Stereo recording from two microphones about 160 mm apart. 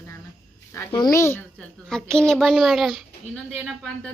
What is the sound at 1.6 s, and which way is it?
Speech, 5° left (ahead or behind).